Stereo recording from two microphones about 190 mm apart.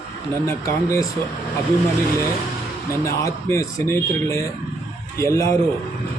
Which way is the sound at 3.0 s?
15° left (ahead or behind).